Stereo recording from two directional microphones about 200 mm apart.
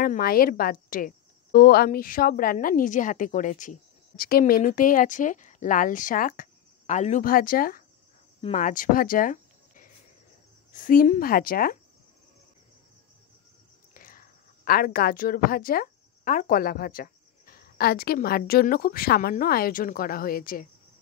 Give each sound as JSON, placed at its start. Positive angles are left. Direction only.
{"t": 0.0, "sound": "speech", "side_deg": 45}
{"t": 8.4, "sound": "speech", "side_deg": 35}
{"t": 13.9, "sound": "a woman's voice", "side_deg": 45}